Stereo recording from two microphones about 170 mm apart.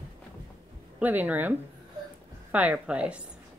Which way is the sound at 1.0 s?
10° right (ahead or behind).